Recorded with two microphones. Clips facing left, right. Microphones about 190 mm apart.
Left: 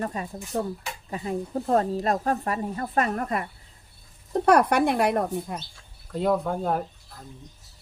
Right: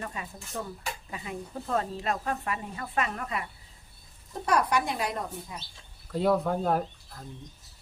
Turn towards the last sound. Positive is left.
turn(degrees=0)  # may be behind; listen again after turning